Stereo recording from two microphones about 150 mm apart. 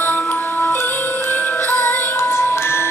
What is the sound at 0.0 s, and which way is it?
Music, 10° left (ahead or behind).